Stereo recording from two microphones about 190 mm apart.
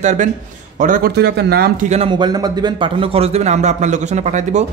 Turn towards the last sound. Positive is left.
turn(degrees=-40)  # may be behind; listen again after turning